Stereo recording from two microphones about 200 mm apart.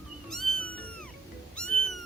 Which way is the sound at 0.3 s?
Centre (ahead or behind).